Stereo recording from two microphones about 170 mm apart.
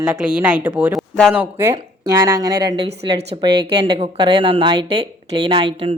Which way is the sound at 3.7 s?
25° right (ahead or behind).